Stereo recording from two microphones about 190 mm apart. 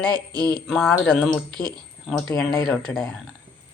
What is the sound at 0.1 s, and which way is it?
Speech, 20° right (ahead or behind).